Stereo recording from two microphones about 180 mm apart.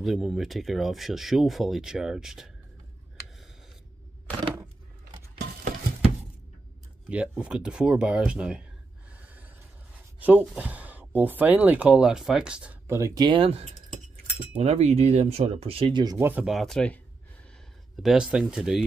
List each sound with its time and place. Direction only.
0.0 s speech: centre (ahead or behind)
5.4 s a sound: 55° right (ahead or behind)
7.1 s speech: 5° right (ahead or behind)
9.1 s gasp: 10° right (ahead or behind)
10.2 s speech: 5° right (ahead or behind)
18.0 s speech: 5° right (ahead or behind)